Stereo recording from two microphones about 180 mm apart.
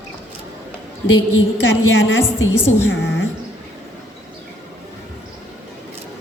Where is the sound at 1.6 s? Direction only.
85° left.